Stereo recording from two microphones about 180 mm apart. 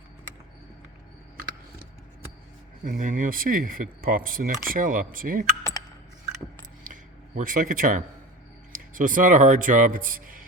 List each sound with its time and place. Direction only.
2.9 s speech: 50° right (ahead or behind)
6.8 s a sound: 45° right (ahead or behind)
8.7 s speech: 50° right (ahead or behind)